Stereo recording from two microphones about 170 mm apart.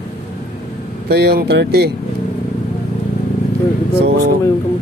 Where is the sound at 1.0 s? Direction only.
70° right (ahead or behind).